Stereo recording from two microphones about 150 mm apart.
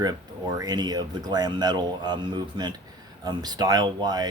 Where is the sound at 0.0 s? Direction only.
25° right (ahead or behind).